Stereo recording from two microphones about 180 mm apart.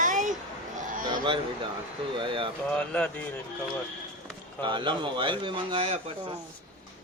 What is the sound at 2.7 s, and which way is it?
Speech, 5° left (ahead or behind).